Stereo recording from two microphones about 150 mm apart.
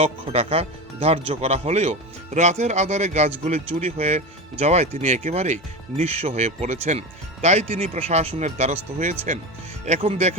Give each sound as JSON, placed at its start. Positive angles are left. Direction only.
{"t": 0.0, "sound": "speech", "side_deg": -40}